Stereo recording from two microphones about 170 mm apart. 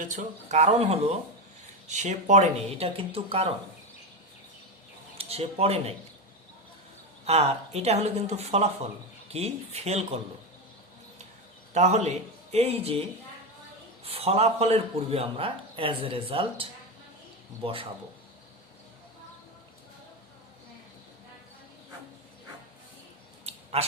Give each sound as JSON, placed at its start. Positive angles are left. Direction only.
{"t": 0.0, "sound": "a man's voice", "side_deg": -50}
{"t": 5.1, "sound": "speech", "side_deg": -35}
{"t": 7.3, "sound": "a man's voice", "side_deg": -40}
{"t": 11.7, "sound": "a man's voice", "side_deg": -40}